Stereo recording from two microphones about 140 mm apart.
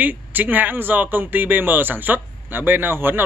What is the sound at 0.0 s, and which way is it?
Speech, 10° right (ahead or behind).